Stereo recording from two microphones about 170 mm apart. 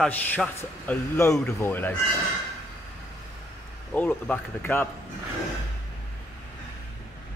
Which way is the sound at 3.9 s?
10° left (ahead or behind).